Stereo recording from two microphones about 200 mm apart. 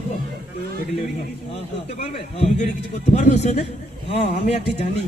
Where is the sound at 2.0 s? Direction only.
30° left (ahead or behind).